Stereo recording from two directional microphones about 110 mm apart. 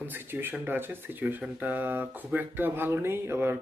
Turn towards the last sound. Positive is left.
turn(degrees=-20)  # may be behind; listen again after turning